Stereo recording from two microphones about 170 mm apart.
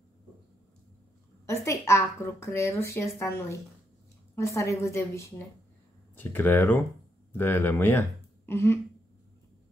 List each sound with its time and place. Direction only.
1.4 s a woman's voice: 15° left (ahead or behind)